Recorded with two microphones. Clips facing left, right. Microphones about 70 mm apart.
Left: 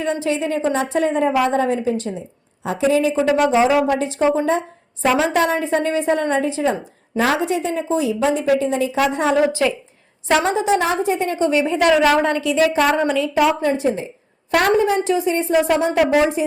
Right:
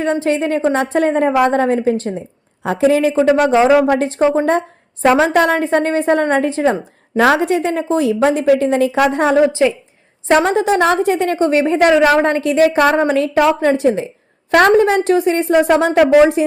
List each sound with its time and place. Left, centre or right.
0.0 s a woman's voice: right
5.0 s a woman's voice: right
9.5 s a woman's voice: right
10.2 s a woman's voice: right
10.5 s a woman's voice: right
12.1 s a woman's voice: right
15.0 s a woman's voice: right